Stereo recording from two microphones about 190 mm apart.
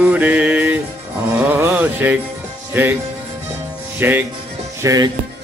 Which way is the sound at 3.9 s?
10° right (ahead or behind).